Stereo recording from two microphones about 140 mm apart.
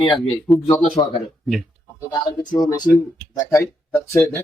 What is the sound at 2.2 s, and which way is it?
Speech, 30° left (ahead or behind).